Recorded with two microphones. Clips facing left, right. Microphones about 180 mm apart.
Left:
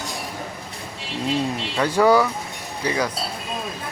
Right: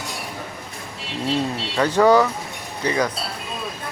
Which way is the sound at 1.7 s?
10° left (ahead or behind).